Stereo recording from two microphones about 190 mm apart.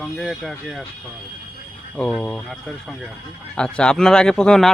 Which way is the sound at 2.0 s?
5° left (ahead or behind).